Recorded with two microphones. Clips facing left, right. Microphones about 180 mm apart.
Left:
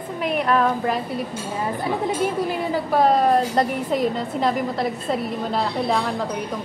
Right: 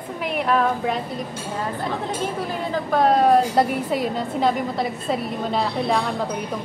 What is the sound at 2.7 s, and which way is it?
Speech, 5° left (ahead or behind).